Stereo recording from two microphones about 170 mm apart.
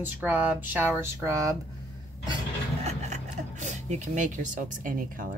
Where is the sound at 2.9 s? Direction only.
40° right (ahead or behind).